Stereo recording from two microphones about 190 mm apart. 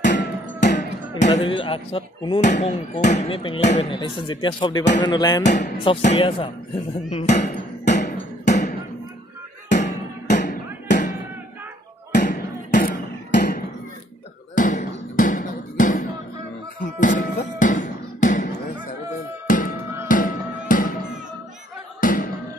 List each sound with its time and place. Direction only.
0.0 s music: 65° left (ahead or behind)
1.2 s speech: 30° left (ahead or behind)
2.4 s speech: 40° left (ahead or behind)
3.9 s speech: 25° left (ahead or behind)
5.4 s speech: 40° left (ahead or behind)
7.1 s music: 35° left (ahead or behind)
10.3 s music: 40° left (ahead or behind)
12.2 s music: 40° left (ahead or behind)
13.3 s a sound: 60° left (ahead or behind)
14.5 s music: 45° left (ahead or behind)
22.0 s music: 45° left (ahead or behind)